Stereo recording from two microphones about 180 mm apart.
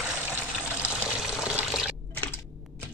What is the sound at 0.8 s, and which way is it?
Water, 5° right (ahead or behind).